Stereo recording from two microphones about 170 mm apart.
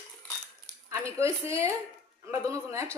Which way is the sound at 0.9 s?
15° right (ahead or behind).